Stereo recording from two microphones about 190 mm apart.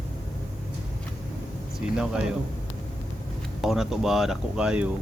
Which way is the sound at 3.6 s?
Centre (ahead or behind).